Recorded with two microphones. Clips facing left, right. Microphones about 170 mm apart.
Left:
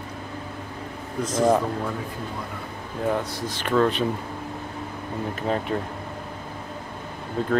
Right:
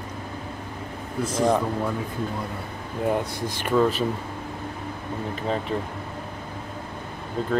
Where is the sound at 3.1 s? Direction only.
10° right (ahead or behind).